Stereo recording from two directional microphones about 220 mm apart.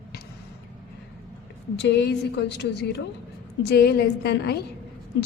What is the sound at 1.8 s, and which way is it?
A woman's voice, 50° left (ahead or behind).